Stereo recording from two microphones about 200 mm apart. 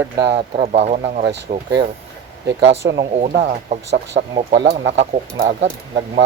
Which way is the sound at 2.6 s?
60° right (ahead or behind).